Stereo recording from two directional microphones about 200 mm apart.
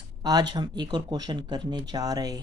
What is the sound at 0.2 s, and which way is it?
Speech, 20° right (ahead or behind).